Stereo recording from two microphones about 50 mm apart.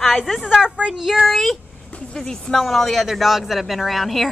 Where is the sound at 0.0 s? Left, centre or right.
Centre.